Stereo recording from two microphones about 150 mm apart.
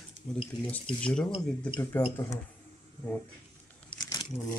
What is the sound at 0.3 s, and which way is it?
Speech, 20° left (ahead or behind).